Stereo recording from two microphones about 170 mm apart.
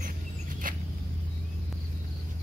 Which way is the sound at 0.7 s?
55° right (ahead or behind).